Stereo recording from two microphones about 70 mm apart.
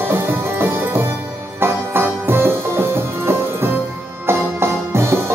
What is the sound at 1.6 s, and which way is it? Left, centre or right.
Music, right.